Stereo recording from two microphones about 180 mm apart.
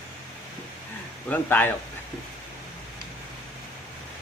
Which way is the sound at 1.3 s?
10° left (ahead or behind).